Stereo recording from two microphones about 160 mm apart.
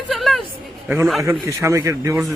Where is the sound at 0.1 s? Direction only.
Centre (ahead or behind).